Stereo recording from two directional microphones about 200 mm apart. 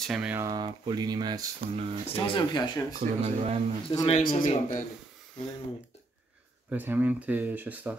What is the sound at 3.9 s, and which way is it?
Speech, 30° left (ahead or behind).